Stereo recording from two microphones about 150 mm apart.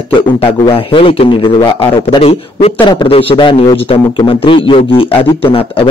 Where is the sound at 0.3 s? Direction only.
35° left (ahead or behind).